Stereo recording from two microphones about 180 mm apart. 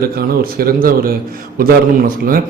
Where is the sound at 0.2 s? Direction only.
55° right (ahead or behind).